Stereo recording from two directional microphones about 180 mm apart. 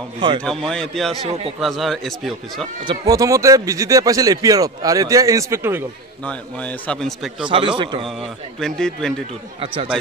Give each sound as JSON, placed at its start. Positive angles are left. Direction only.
{"t": 0.4, "sound": "a man's voice", "side_deg": 5}
{"t": 1.2, "sound": "speech", "side_deg": -35}
{"t": 1.6, "sound": "a man's voice", "side_deg": 0}
{"t": 2.9, "sound": "speech", "side_deg": -20}
{"t": 6.2, "sound": "a man's voice", "side_deg": 5}
{"t": 7.4, "sound": "speech", "side_deg": -30}
{"t": 8.2, "sound": "a man's voice", "side_deg": 5}